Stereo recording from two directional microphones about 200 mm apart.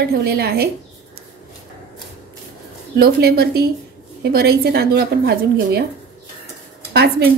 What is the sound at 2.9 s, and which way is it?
A woman's voice, 50° right (ahead or behind).